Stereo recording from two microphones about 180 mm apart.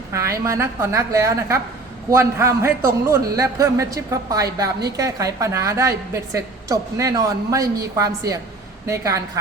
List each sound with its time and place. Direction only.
0.1 s a woman's voice: 15° right (ahead or behind)